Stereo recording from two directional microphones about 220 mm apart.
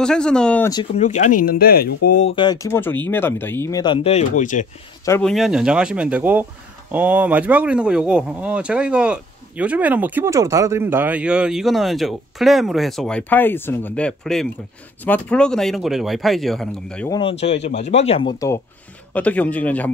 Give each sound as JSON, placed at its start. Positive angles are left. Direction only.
{"t": 0.0, "sound": "speech", "side_deg": 5}
{"t": 0.9, "sound": "speech", "side_deg": 35}
{"t": 2.3, "sound": "speech", "side_deg": 20}
{"t": 5.0, "sound": "speech", "side_deg": 10}
{"t": 5.3, "sound": "speech", "side_deg": 0}
{"t": 17.1, "sound": "speech", "side_deg": 25}
{"t": 19.1, "sound": "speech", "side_deg": 5}